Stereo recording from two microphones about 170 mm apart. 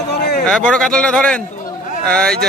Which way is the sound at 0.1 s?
75° left (ahead or behind).